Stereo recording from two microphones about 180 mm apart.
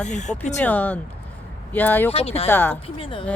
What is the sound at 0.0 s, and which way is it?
Speech, 40° left (ahead or behind).